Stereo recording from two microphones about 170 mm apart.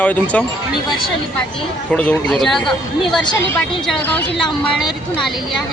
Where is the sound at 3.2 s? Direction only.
15° left (ahead or behind).